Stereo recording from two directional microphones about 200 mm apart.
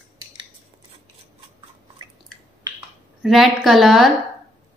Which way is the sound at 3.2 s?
Centre (ahead or behind).